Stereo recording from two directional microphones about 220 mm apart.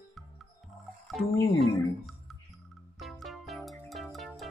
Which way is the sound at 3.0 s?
Centre (ahead or behind).